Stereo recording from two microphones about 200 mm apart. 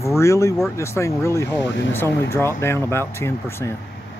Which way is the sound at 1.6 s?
65° left (ahead or behind).